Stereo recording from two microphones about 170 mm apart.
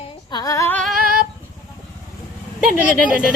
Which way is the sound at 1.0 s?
60° right (ahead or behind).